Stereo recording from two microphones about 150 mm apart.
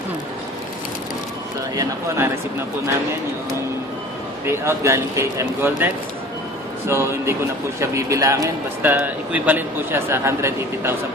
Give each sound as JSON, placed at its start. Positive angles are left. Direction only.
{"t": 1.7, "sound": "a man's voice", "side_deg": -20}
{"t": 4.4, "sound": "a man's voice", "side_deg": -15}
{"t": 8.8, "sound": "a man's voice", "side_deg": -10}